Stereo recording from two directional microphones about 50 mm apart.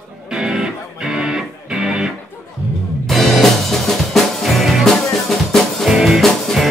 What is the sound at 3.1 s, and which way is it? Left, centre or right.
Music, centre.